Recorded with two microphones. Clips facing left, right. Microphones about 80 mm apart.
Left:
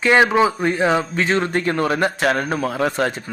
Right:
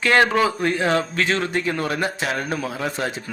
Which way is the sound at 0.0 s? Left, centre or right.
Centre.